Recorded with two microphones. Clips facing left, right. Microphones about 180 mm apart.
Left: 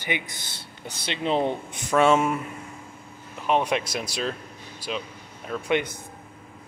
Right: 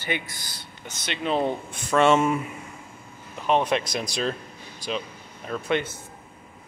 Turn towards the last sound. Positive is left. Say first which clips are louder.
# left 1 dB
turn(degrees=15)  # may be behind; listen again after turning